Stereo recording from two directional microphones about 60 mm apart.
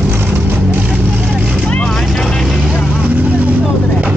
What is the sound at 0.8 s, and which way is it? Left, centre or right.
Vehicle, centre.